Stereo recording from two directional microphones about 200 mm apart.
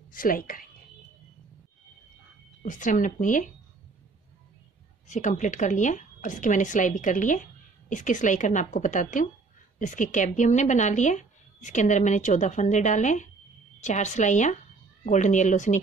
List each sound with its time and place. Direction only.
0.1 s speech: 45° left (ahead or behind)
2.6 s speech: 40° left (ahead or behind)
5.0 s speech: 35° left (ahead or behind)